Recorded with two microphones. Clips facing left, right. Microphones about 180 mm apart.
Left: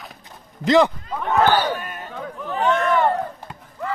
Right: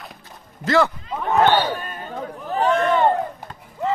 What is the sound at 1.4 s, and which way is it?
Speech, 25° right (ahead or behind).